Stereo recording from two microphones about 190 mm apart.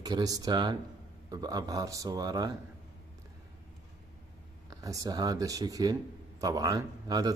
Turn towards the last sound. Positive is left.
turn(degrees=-20)  # may be behind; listen again after turning